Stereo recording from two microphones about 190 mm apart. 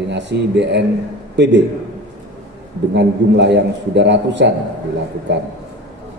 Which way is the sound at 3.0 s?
65° right (ahead or behind).